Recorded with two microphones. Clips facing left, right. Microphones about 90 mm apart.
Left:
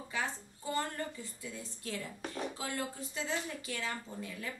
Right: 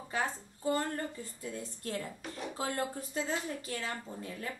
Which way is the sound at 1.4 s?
45° right (ahead or behind).